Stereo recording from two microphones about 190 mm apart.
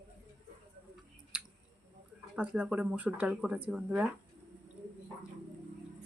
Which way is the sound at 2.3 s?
5° right (ahead or behind).